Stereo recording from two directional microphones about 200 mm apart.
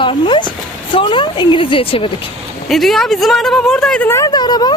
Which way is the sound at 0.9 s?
25° left (ahead or behind).